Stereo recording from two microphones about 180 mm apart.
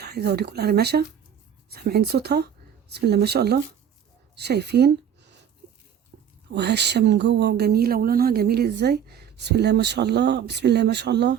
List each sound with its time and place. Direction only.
0.0 s speech: 65° right (ahead or behind)
6.5 s speech: 70° right (ahead or behind)